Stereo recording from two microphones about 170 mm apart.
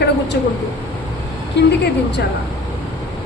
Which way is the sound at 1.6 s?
90° left.